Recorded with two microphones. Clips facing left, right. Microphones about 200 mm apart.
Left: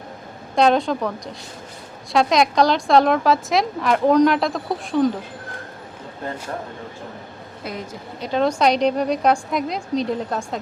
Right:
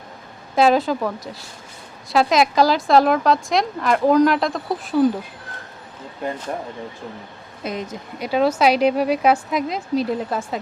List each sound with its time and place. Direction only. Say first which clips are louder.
0.5 s a woman's voice: right 1 dB; 5° right (ahead or behind)
7.6 s a woman's voice: right 4 dB; 20° right (ahead or behind)
8.3 s a woman's voice: right 1 dB; 5° right (ahead or behind)